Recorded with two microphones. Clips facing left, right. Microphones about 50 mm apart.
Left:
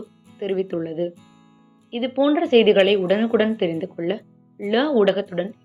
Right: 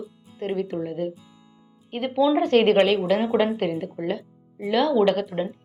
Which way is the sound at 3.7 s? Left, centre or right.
Left.